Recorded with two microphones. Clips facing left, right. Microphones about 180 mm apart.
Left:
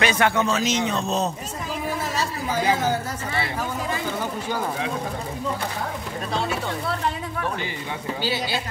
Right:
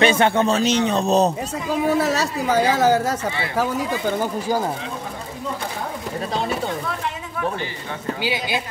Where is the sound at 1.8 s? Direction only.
75° right (ahead or behind); by 3.1 s 90° right.